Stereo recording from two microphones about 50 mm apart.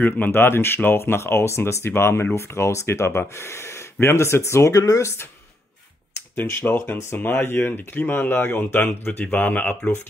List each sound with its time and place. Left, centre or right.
0.0 s speech: left
2.3 s speech: left
6.6 s speech: left
9.2 s speech: left